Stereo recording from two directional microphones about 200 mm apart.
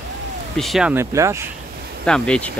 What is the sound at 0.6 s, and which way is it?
Speech, centre (ahead or behind).